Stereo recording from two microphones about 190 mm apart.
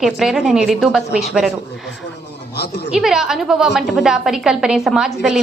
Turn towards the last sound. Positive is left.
turn(degrees=-5)  # may be behind; listen again after turning